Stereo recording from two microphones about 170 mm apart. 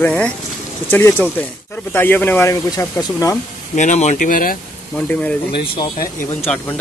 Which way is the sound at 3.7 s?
45° left (ahead or behind).